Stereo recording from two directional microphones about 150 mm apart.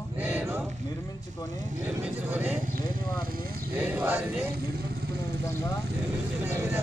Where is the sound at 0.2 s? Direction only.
10° right (ahead or behind).